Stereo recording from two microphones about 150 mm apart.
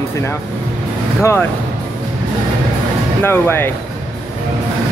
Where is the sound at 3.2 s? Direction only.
15° left (ahead or behind).